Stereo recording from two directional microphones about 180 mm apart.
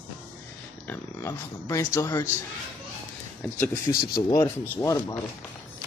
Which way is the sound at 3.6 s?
20° left (ahead or behind).